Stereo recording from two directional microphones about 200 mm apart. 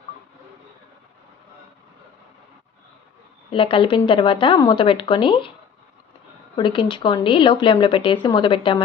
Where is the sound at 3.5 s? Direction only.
25° left (ahead or behind).